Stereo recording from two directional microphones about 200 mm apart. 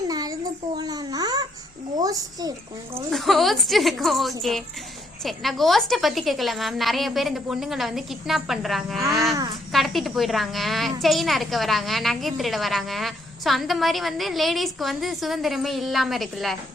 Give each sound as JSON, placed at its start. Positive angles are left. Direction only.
{"t": 0.1, "sound": "a sound", "side_deg": -20}
{"t": 0.8, "sound": "babbling", "side_deg": -20}
{"t": 2.0, "sound": "a child's voice", "side_deg": -15}
{"t": 3.1, "sound": "a woman's voice", "side_deg": 0}
{"t": 9.3, "sound": "a sound", "side_deg": -20}
{"t": 9.7, "sound": "a woman's voice", "side_deg": 0}